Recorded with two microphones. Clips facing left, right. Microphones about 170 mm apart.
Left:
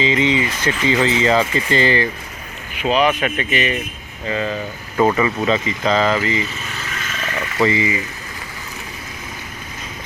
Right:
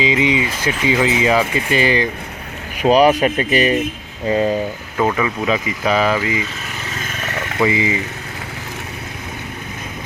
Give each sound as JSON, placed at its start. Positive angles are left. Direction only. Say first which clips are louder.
{"t": 0.0, "sound": "speech", "louder": "right 1 dB", "side_deg": -15}
{"t": 2.7, "sound": "speech", "louder": "right 5 dB", "side_deg": -40}
{"t": 4.9, "sound": "speech", "louder": "left 2 dB", "side_deg": 0}
{"t": 5.5, "sound": "speech", "louder": "even", "side_deg": -10}
{"t": 7.7, "sound": "speech", "louder": "right 1 dB", "side_deg": -20}